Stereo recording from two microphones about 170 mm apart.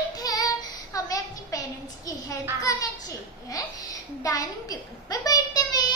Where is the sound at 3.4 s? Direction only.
20° left (ahead or behind).